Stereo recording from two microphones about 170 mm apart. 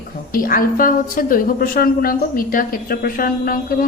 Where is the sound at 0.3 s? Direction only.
55° left (ahead or behind).